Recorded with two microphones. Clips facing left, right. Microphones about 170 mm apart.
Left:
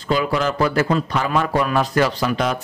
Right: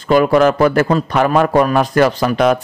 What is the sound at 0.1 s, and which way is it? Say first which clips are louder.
A man's voice: right 9 dB; 55° right (ahead or behind).